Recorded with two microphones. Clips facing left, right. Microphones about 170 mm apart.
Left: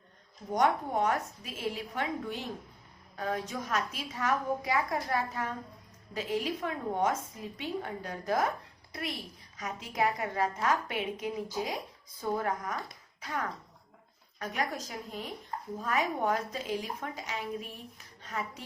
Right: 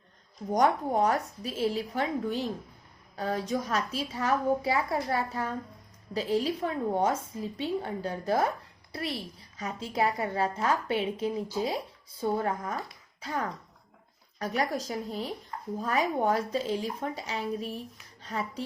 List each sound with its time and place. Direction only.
0.5 s a woman's voice: 35° right (ahead or behind)